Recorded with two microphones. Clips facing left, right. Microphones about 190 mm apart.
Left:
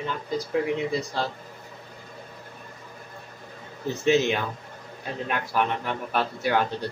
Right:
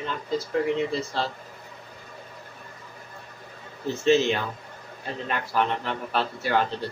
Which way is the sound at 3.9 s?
15° left (ahead or behind).